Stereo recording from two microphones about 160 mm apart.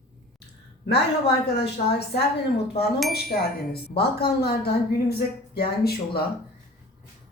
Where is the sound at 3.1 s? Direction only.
80° left.